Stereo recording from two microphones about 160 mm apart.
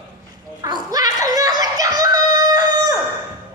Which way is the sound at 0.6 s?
25° right (ahead or behind).